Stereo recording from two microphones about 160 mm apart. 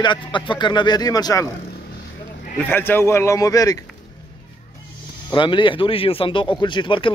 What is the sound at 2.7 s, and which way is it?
Speech, 15° left (ahead or behind).